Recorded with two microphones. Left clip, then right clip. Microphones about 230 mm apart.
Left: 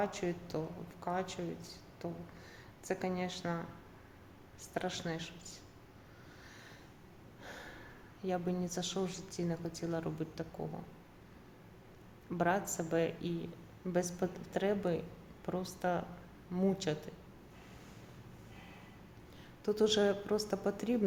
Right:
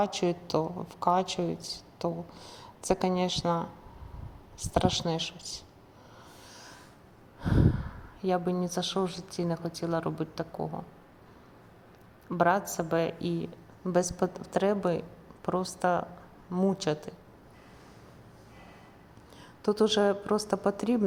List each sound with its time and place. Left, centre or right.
0.0 s a woman's voice: right
8.2 s a woman's voice: centre
12.4 s a woman's voice: centre
19.6 s a woman's voice: centre